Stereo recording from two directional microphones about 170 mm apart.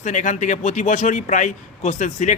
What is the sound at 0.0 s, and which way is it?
A man's voice, 45° left (ahead or behind).